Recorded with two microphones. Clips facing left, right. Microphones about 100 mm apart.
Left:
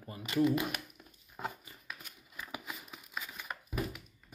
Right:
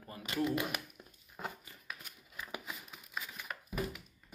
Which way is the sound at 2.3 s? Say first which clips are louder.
Even; centre (ahead or behind).